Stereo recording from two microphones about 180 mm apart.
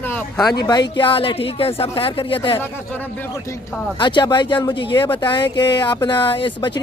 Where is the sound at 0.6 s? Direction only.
25° left (ahead or behind).